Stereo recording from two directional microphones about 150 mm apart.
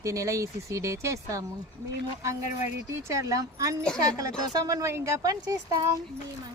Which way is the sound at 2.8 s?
20° right (ahead or behind).